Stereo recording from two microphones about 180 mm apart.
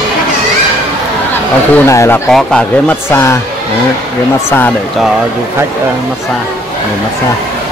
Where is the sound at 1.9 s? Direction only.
15° left (ahead or behind).